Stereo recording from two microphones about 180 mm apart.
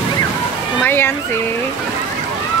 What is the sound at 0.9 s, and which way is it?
Speech, 10° left (ahead or behind).